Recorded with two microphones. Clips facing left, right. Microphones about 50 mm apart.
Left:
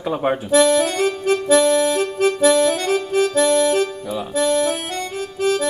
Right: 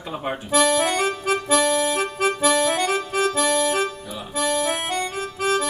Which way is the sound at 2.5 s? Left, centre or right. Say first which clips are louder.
Left 3 dB; right.